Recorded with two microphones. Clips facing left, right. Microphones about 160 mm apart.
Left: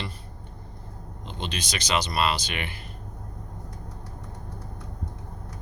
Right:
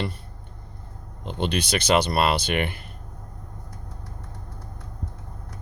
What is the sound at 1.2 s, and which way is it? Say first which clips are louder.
Speech: right 8 dB; 55° right (ahead or behind).